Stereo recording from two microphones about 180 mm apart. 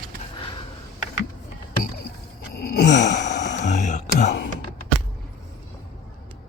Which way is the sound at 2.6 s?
60° left (ahead or behind).